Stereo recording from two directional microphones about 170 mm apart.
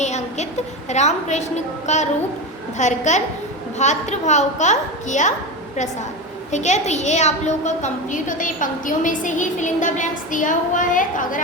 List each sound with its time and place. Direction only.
0.0 s a woman's voice: 40° left (ahead or behind)
6.5 s a woman's voice: 45° left (ahead or behind)